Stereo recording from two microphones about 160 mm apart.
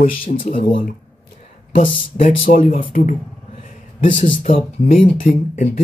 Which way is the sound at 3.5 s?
55° left (ahead or behind).